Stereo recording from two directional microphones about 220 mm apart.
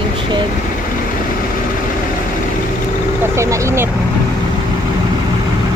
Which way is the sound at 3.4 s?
15° right (ahead or behind).